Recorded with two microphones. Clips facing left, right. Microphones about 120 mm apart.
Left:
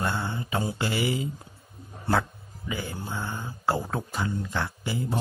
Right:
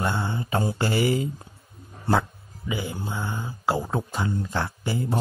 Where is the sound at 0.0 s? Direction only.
20° right (ahead or behind).